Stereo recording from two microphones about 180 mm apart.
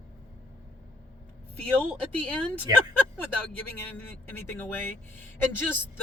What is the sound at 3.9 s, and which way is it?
A man's voice, 10° left (ahead or behind).